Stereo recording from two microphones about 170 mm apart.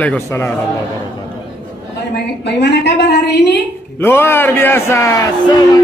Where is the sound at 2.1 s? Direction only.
80° left.